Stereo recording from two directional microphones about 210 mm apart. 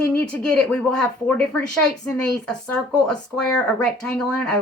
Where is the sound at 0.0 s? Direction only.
5° left (ahead or behind).